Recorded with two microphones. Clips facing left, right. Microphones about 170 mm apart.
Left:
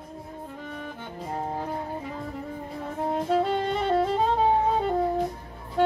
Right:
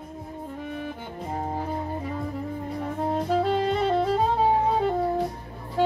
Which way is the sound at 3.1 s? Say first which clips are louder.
Even; centre (ahead or behind).